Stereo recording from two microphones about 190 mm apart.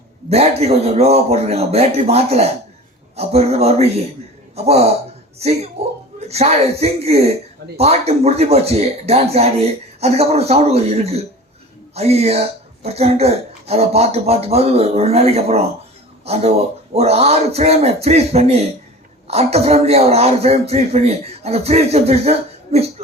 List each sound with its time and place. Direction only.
0.3 s speech: 35° right (ahead or behind)